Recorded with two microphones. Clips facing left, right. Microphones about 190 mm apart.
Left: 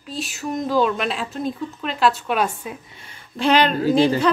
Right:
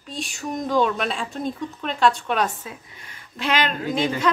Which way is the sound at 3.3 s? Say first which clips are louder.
Left 6 dB; 35° left (ahead or behind).